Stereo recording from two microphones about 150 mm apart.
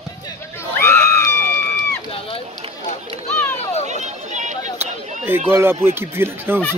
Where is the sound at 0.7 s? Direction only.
15° left (ahead or behind).